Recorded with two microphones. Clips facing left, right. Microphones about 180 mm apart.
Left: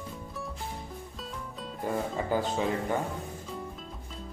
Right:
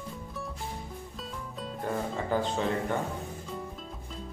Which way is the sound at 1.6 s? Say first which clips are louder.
Left 1 dB; 5° left (ahead or behind).